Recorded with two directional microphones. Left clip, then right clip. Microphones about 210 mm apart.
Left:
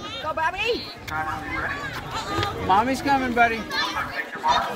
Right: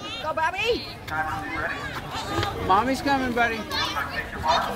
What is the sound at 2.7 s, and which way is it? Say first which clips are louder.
Speech: left 2 dB; 30° left (ahead or behind).